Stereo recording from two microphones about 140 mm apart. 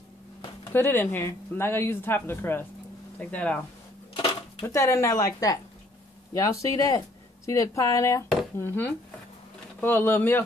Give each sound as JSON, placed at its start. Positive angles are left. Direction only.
{"t": 0.7, "sound": "speech", "side_deg": 15}
{"t": 4.1, "sound": "dishes", "side_deg": 40}
{"t": 4.6, "sound": "a woman's voice", "side_deg": 20}